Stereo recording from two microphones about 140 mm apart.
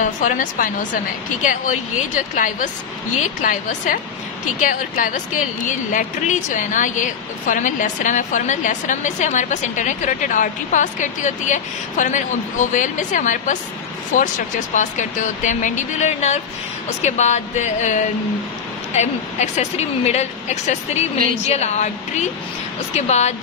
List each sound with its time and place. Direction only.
0.0 s a woman's voice: 65° left (ahead or behind); by 23.3 s 50° left (ahead or behind)